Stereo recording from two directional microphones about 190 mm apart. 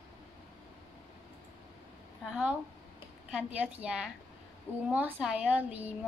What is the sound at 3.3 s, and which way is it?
Speech, 5° right (ahead or behind).